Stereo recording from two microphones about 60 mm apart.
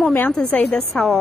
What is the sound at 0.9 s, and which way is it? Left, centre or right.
Speech, centre.